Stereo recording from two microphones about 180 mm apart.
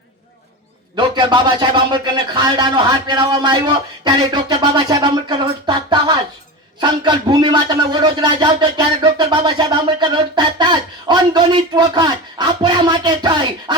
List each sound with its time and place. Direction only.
0.9 s a man's voice: 25° right (ahead or behind)